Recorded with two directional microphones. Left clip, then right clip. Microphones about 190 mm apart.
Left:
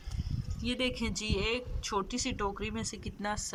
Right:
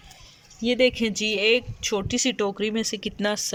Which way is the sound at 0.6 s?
20° right (ahead or behind).